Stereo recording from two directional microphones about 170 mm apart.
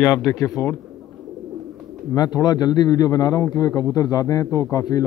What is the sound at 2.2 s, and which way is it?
A man's voice, 25° left (ahead or behind).